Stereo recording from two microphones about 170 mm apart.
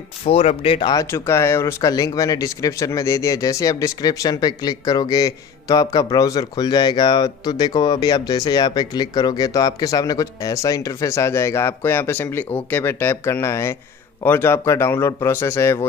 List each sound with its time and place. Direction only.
0.3 s speech: 35° left (ahead or behind)
0.9 s a man's voice: 15° left (ahead or behind)